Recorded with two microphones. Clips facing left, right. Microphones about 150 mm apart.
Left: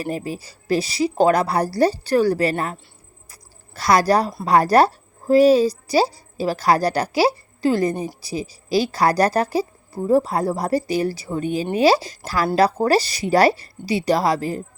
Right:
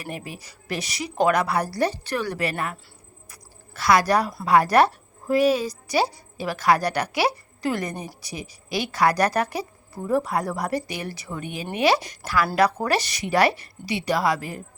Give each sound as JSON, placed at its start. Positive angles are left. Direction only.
{"t": 0.0, "sound": "a woman's voice", "side_deg": 30}
{"t": 3.8, "sound": "a woman's voice", "side_deg": 40}